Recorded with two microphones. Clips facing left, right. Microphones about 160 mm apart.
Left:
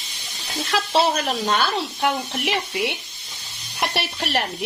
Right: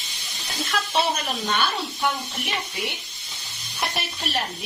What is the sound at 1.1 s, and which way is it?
Speech, 75° left (ahead or behind).